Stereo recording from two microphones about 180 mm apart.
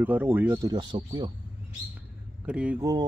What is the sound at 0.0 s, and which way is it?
Speech, 10° right (ahead or behind).